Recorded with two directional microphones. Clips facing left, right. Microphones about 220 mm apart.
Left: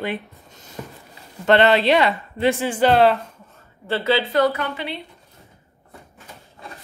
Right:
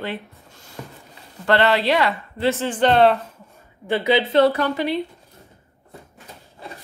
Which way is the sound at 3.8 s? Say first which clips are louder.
Right 2 dB; 15° right (ahead or behind).